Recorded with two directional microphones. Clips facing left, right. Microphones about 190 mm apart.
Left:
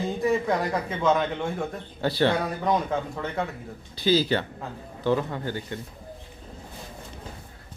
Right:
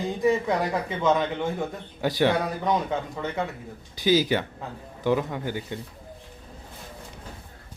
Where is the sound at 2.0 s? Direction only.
15° right (ahead or behind).